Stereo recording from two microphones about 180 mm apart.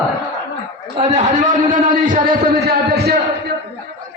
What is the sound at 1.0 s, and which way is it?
Speech, 40° right (ahead or behind).